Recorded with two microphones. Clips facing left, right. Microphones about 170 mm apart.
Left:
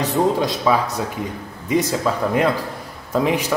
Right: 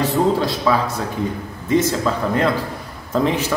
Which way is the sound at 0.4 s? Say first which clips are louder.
Even; 15° left (ahead or behind).